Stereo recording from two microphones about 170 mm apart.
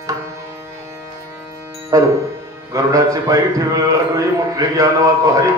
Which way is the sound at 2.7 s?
20° right (ahead or behind).